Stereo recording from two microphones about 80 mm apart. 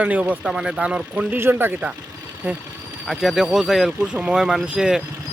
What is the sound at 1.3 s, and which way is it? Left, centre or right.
Speech, right.